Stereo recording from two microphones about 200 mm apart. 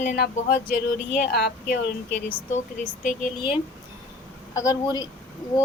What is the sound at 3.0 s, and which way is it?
Speech, 40° left (ahead or behind).